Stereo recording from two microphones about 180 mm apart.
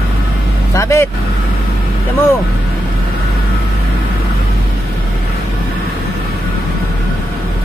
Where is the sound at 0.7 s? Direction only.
15° left (ahead or behind).